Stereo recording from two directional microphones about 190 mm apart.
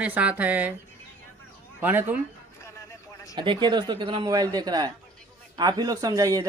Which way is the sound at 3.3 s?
25° right (ahead or behind).